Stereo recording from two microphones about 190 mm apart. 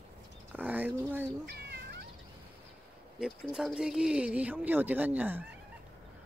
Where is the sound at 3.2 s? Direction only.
Centre (ahead or behind).